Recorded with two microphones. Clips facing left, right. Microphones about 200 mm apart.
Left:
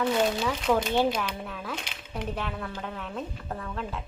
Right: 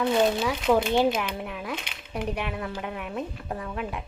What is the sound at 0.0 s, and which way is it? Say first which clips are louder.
A woman's voice: right 3 dB; 10° right (ahead or behind).